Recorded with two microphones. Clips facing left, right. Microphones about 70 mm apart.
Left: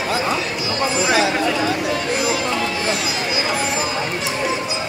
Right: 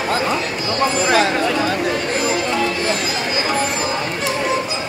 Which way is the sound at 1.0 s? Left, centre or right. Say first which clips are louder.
Right 1 dB; right.